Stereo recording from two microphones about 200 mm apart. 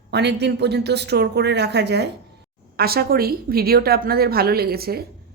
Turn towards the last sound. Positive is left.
turn(degrees=-50)  # may be behind; listen again after turning